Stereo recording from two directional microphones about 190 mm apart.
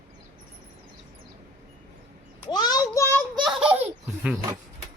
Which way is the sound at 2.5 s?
20° left (ahead or behind).